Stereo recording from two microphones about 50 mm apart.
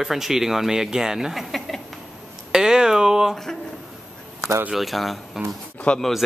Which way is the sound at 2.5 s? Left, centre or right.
Centre.